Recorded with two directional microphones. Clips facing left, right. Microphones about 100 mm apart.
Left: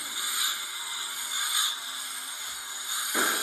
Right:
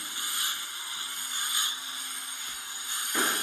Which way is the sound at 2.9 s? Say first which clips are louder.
Left 1 dB; 10° left (ahead or behind).